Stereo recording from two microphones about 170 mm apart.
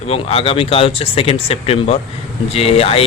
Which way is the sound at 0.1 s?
35° left (ahead or behind).